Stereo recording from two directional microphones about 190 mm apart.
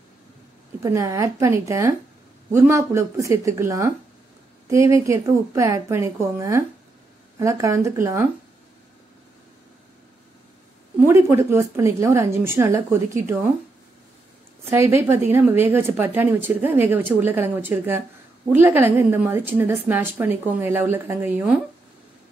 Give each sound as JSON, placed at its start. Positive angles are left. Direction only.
{"t": 0.8, "sound": "a woman's voice", "side_deg": -15}
{"t": 11.0, "sound": "a woman's voice", "side_deg": -15}
{"t": 14.7, "sound": "a woman's voice", "side_deg": -15}